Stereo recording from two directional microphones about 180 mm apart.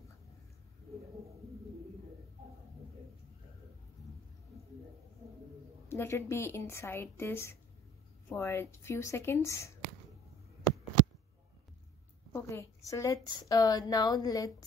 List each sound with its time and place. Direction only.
5.9 s a woman's voice: 15° left (ahead or behind)
12.3 s a woman's voice: 15° left (ahead or behind)